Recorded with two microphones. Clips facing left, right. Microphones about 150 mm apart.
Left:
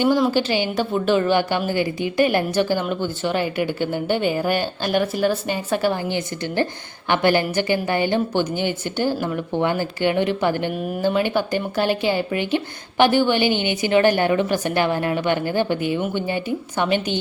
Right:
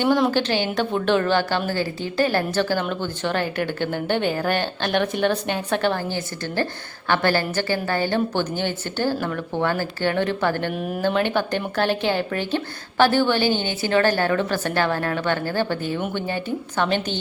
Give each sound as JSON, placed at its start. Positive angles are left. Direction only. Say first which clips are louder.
{"t": 0.0, "sound": "a woman's voice", "louder": "left 1 dB", "side_deg": 5}
{"t": 10.7, "sound": "a woman's voice", "louder": "left 1 dB", "side_deg": 0}